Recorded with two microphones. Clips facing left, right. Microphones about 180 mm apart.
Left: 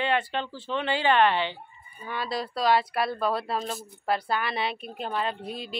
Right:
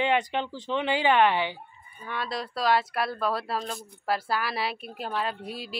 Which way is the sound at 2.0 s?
Centre (ahead or behind).